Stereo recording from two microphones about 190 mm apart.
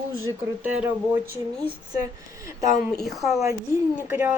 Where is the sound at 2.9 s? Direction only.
Centre (ahead or behind).